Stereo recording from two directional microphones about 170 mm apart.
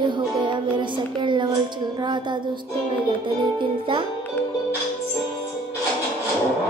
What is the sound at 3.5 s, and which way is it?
Music, 30° right (ahead or behind).